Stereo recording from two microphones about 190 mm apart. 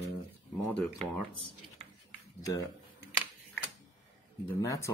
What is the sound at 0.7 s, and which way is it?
Speech, 5° left (ahead or behind).